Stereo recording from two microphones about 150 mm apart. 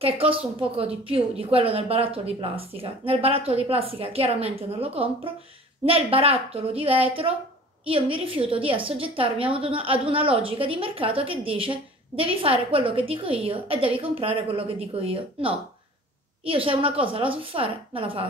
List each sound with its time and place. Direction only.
0.0 s a woman's voice: 40° right (ahead or behind)